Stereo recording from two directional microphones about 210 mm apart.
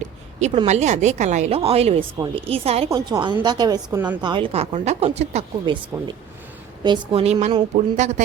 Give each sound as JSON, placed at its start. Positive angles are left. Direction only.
{"t": 0.3, "sound": "a woman's voice", "side_deg": -30}